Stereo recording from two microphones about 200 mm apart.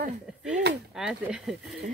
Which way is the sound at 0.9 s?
5° right (ahead or behind).